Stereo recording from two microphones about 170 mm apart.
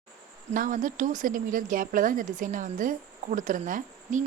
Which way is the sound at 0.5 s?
50° right (ahead or behind).